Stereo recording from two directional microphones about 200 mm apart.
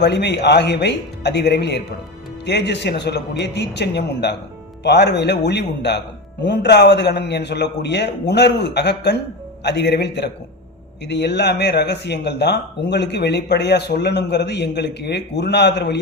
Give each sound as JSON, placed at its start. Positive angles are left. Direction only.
{"t": 0.0, "sound": "speech", "side_deg": 60}